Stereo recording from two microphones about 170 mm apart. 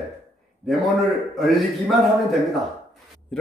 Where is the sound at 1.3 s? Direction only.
Centre (ahead or behind).